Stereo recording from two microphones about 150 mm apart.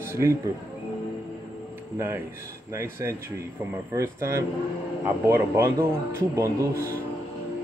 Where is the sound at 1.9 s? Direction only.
15° right (ahead or behind).